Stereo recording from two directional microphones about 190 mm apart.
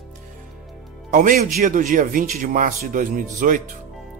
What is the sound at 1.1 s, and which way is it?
Speech, 45° right (ahead or behind).